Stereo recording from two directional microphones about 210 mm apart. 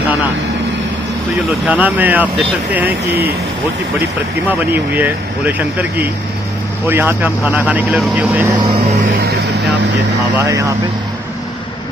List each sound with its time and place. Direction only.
1.7 s speech: 5° right (ahead or behind)
4.5 s speech: 10° right (ahead or behind)
9.1 s vehicle: 45° right (ahead or behind)
10.4 s speech: 15° right (ahead or behind)